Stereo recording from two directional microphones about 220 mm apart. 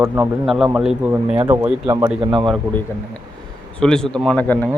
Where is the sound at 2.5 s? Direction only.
5° left (ahead or behind).